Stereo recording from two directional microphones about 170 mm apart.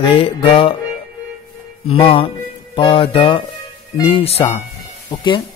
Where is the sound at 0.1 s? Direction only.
30° left (ahead or behind).